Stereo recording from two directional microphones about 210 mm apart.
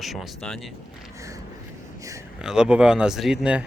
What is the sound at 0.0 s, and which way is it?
Speech, centre (ahead or behind).